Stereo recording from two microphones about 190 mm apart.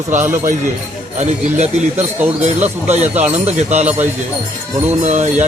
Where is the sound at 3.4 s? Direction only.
35° right (ahead or behind).